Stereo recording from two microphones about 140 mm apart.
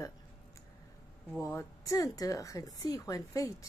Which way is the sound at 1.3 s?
20° left (ahead or behind).